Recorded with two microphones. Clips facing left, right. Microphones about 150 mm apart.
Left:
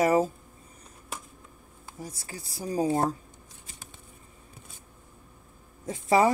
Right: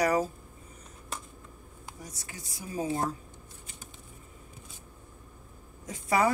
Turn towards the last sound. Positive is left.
turn(degrees=25)  # may be behind; listen again after turning